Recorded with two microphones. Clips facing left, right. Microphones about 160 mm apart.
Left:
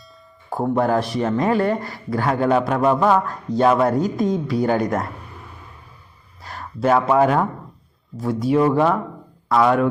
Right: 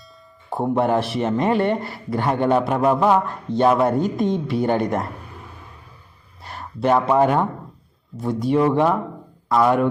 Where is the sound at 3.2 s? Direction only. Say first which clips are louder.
Left 1 dB; 20° right (ahead or behind).